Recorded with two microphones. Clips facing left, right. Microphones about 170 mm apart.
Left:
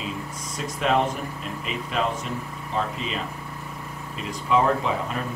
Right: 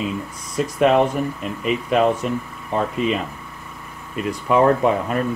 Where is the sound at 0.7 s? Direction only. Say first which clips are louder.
Right 7 dB; 55° right (ahead or behind).